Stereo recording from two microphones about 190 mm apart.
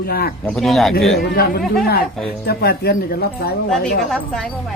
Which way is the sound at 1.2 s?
55° left (ahead or behind).